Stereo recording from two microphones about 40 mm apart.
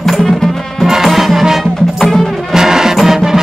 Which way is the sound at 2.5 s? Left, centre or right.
Centre.